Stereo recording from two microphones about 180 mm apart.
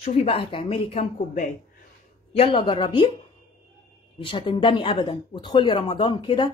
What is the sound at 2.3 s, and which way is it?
Speech, 30° left (ahead or behind).